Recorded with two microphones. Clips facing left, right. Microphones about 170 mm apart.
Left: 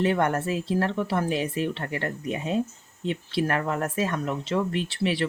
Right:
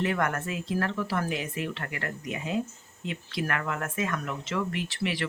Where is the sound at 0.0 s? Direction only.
30° left (ahead or behind).